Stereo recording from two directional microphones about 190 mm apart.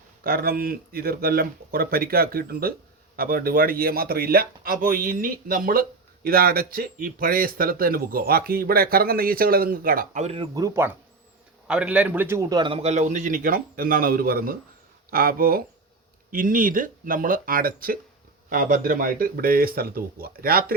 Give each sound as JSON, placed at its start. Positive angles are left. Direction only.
{"t": 0.3, "sound": "a man's voice", "side_deg": -50}
{"t": 10.2, "sound": "a man's voice", "side_deg": -30}